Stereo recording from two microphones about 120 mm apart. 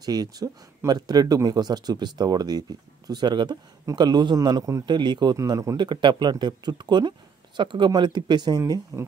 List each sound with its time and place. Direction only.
0.0 s a man's voice: 35° right (ahead or behind)